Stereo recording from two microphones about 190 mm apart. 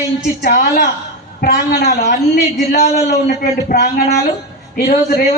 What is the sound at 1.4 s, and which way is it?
Speech, 55° left (ahead or behind).